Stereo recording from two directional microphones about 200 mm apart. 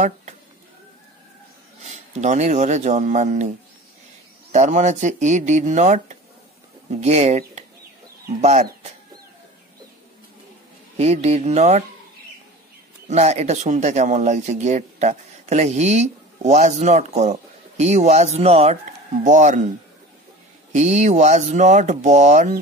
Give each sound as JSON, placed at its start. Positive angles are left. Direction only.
{"t": 1.8, "sound": "speech", "side_deg": -35}
{"t": 11.0, "sound": "speech", "side_deg": -35}
{"t": 13.1, "sound": "speech", "side_deg": -35}
{"t": 20.7, "sound": "speech", "side_deg": -35}